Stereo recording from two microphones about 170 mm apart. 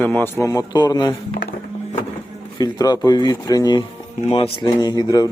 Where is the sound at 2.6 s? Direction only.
20° left (ahead or behind).